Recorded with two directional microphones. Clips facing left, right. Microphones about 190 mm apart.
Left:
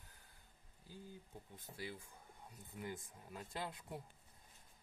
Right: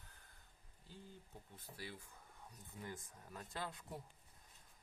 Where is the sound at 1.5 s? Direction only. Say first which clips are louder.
Left 3 dB; 20° left (ahead or behind).